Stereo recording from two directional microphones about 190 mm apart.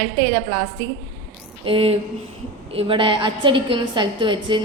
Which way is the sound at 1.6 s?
30° right (ahead or behind).